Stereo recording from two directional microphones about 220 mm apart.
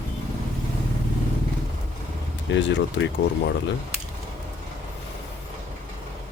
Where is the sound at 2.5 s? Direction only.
55° left (ahead or behind).